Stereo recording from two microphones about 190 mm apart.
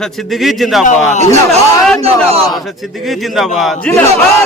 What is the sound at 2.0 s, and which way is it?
Speech, 30° right (ahead or behind).